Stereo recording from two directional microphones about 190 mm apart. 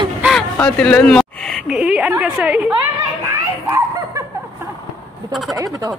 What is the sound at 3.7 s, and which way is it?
Dog, 15° right (ahead or behind).